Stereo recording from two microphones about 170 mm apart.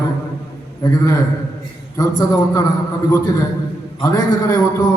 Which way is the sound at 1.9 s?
20° left (ahead or behind).